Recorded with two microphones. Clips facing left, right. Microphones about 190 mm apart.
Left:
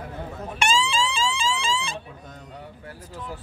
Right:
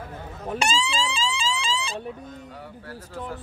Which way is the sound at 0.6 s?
35° right (ahead or behind).